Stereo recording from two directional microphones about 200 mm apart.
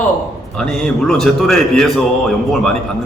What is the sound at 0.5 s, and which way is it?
A man's voice, 5° left (ahead or behind).